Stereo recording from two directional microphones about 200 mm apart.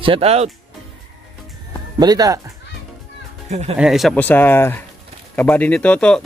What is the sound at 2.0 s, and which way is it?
Speech, 20° right (ahead or behind).